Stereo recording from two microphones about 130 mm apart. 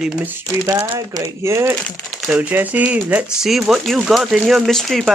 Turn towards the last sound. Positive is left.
turn(degrees=0)  # may be behind; listen again after turning